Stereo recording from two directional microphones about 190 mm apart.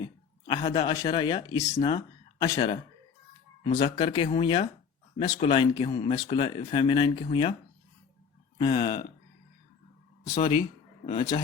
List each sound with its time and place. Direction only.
0.0 s speech: 25° left (ahead or behind)
8.5 s speech: 25° left (ahead or behind)
10.3 s speech: 25° left (ahead or behind)